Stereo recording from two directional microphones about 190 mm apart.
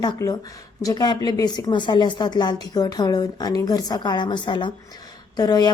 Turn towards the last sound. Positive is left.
turn(degrees=20)  # may be behind; listen again after turning